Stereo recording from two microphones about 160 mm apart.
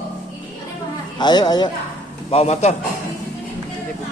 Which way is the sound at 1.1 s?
25° left (ahead or behind).